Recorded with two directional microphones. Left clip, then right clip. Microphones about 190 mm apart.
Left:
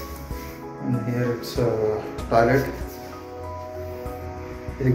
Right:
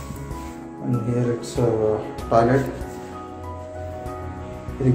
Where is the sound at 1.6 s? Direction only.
5° right (ahead or behind).